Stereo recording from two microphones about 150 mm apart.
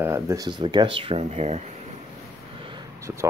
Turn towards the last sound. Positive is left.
turn(degrees=-20)  # may be behind; listen again after turning